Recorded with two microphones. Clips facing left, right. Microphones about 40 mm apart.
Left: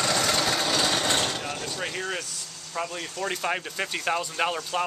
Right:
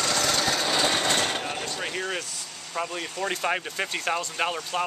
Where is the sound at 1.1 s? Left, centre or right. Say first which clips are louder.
Right 1 dB; right.